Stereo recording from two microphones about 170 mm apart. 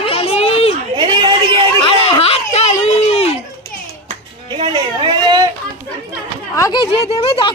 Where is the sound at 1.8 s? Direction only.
35° left (ahead or behind).